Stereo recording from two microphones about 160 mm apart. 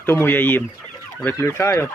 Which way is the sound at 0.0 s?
15° left (ahead or behind).